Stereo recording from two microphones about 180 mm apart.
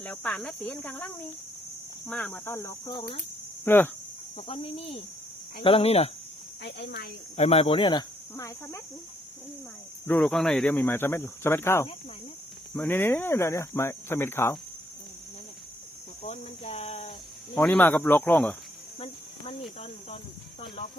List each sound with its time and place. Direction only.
0.0 s speech: 10° left (ahead or behind); by 3.2 s 25° left (ahead or behind)
3.6 s speech: 10° left (ahead or behind)
4.4 s speech: 30° left (ahead or behind)
6.6 s speech: 70° left (ahead or behind)
7.3 s speech: 35° left (ahead or behind); by 8.8 s 15° left (ahead or behind)
10.1 s speech: 5° left (ahead or behind)
16.2 s speech: 35° left (ahead or behind)
17.6 s speech: 10° left (ahead or behind)
18.9 s cricket: 30° left (ahead or behind)